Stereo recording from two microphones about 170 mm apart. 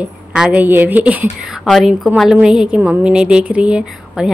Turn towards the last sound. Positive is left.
turn(degrees=-5)  # may be behind; listen again after turning